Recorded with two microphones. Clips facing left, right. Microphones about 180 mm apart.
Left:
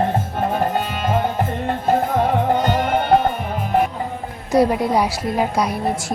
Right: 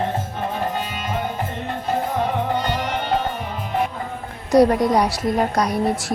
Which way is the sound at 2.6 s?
50° left (ahead or behind).